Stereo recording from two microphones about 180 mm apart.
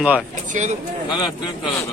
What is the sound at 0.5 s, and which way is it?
Speech, 40° right (ahead or behind).